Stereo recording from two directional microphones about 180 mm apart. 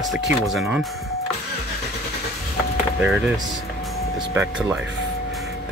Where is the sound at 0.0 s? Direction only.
Centre (ahead or behind).